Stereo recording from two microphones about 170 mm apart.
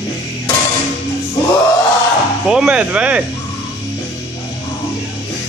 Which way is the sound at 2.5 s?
5° right (ahead or behind).